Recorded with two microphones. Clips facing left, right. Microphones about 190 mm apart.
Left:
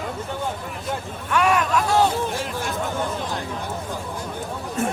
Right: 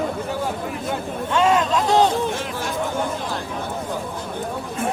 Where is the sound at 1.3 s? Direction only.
25° right (ahead or behind).